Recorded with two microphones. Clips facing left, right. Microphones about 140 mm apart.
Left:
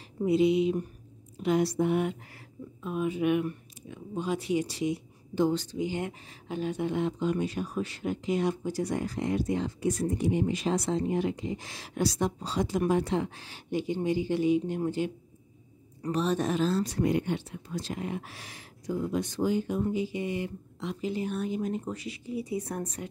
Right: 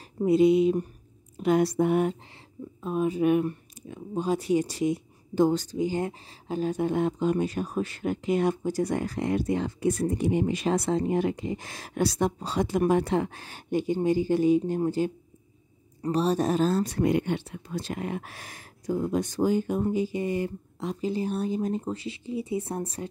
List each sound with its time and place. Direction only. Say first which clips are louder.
0.2 s speech: right 4 dB; 45° right (ahead or behind); by 23.0 s 30° right (ahead or behind)